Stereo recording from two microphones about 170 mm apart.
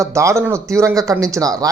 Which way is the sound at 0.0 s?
15° right (ahead or behind).